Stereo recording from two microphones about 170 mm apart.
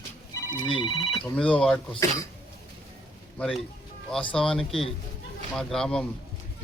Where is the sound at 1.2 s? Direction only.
5° left (ahead or behind).